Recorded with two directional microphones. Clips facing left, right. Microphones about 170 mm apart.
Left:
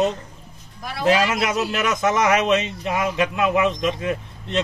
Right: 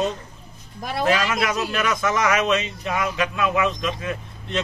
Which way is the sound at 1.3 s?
20° left (ahead or behind).